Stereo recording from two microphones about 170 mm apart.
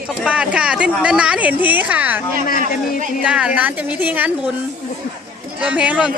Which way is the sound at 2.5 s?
55° left (ahead or behind).